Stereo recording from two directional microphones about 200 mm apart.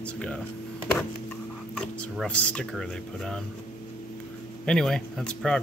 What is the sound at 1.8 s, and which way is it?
Speech, 5° left (ahead or behind).